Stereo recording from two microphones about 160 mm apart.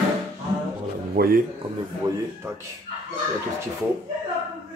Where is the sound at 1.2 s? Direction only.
80° right.